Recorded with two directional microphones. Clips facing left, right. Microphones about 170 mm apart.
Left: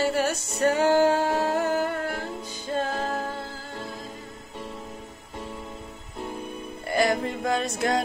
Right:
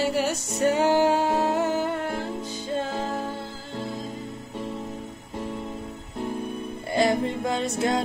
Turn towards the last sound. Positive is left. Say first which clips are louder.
# even
turn(degrees=-25)  # may be behind; listen again after turning